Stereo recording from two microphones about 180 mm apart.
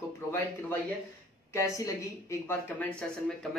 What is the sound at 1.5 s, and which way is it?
Speech, 15° left (ahead or behind).